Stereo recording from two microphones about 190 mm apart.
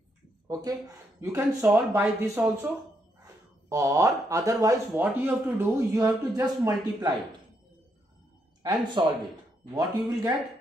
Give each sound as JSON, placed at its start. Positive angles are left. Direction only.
{"t": 0.5, "sound": "speech", "side_deg": -20}
{"t": 1.7, "sound": "a man's voice", "side_deg": 0}
{"t": 9.0, "sound": "a man's voice", "side_deg": -25}